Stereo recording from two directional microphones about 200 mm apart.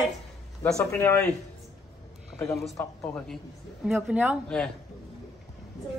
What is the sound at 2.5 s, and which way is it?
A woman's voice, centre (ahead or behind).